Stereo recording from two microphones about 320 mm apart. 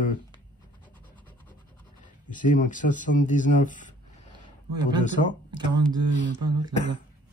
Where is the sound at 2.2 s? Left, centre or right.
Left.